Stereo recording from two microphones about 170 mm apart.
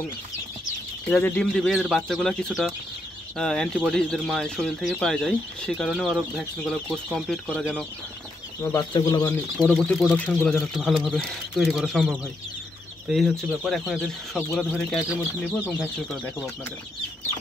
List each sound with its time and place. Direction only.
1.1 s speech: 10° left (ahead or behind)
8.9 s speech: 25° left (ahead or behind)
9.6 s speech: centre (ahead or behind)